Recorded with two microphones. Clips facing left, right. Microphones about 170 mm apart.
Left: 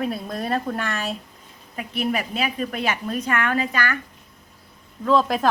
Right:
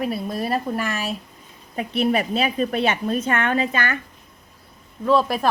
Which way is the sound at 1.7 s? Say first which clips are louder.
Right 4 dB; 30° right (ahead or behind).